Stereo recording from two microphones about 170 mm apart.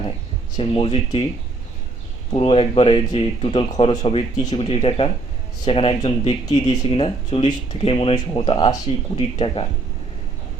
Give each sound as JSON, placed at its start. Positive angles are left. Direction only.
{"t": 0.5, "sound": "speech", "side_deg": 30}
{"t": 2.3, "sound": "speech", "side_deg": 35}